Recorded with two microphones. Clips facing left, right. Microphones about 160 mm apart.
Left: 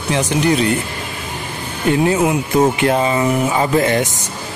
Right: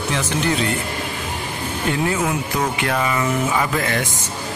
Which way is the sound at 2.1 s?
20° left (ahead or behind).